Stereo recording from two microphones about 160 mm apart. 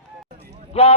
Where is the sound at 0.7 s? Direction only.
40° left (ahead or behind).